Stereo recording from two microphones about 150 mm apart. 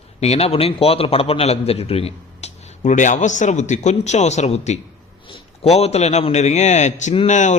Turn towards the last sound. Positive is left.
turn(degrees=55)  # may be behind; listen again after turning